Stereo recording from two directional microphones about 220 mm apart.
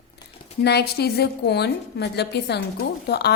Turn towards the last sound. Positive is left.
turn(degrees=45)  # may be behind; listen again after turning